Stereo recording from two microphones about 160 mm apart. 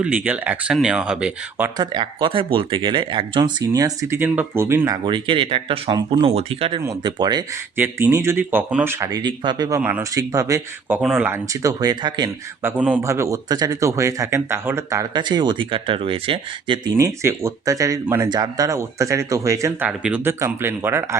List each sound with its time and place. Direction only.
0.0 s speech: 10° right (ahead or behind)
1.8 s a man's voice: 25° right (ahead or behind)
5.0 s a man's voice: 30° right (ahead or behind)
7.8 s speech: 15° right (ahead or behind)
11.3 s a man's voice: 20° right (ahead or behind)
12.6 s a man's voice: 10° right (ahead or behind); by 16.9 s 30° right (ahead or behind)
16.9 s a man's voice: 20° right (ahead or behind)
19.9 s speech: 5° right (ahead or behind)